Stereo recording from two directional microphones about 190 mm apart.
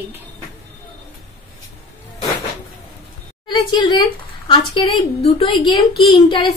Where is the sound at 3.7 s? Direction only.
25° left (ahead or behind).